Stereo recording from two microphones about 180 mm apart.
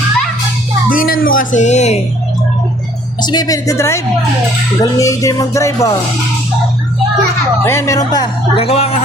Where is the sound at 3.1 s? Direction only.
25° left (ahead or behind).